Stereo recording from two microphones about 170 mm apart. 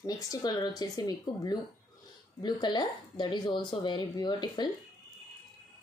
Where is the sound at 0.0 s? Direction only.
20° left (ahead or behind).